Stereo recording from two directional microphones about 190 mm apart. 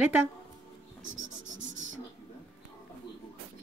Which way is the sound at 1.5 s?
80° right.